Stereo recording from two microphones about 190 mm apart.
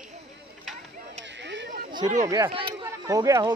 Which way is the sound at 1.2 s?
70° right (ahead or behind).